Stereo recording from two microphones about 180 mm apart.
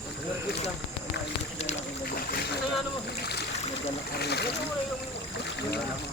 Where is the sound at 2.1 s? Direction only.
60° left (ahead or behind).